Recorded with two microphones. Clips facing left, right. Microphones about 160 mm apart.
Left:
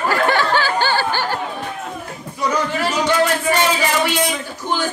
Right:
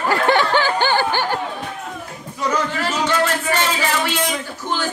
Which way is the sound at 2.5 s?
10° left (ahead or behind).